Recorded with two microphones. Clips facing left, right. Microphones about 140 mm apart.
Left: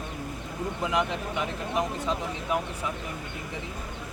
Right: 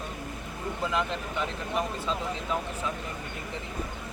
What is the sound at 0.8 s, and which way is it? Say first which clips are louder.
Speech: left 2 dB; 15° left (ahead or behind).